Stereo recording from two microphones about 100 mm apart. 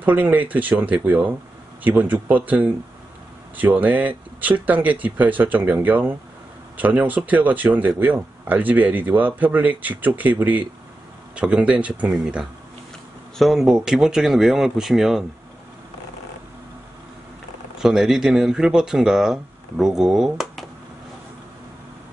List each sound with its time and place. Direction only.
0.0 s speech: 15° right (ahead or behind)
17.7 s speech: 5° right (ahead or behind)